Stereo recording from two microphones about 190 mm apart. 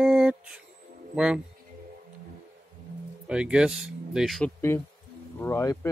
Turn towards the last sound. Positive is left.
turn(degrees=15)  # may be behind; listen again after turning